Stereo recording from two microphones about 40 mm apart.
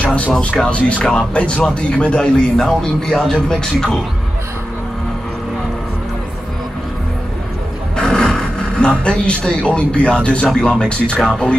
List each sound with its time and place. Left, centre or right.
0.0 s music: left
0.7 s a man's voice: left
2.5 s speech: centre
8.0 s a sound: centre
10.0 s a man's voice: left
11.1 s speech: centre